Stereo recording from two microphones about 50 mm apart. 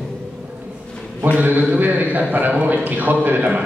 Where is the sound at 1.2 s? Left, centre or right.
Right.